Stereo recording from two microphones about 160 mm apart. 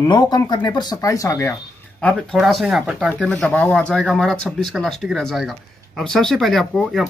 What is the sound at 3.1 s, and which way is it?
Speech, 5° left (ahead or behind).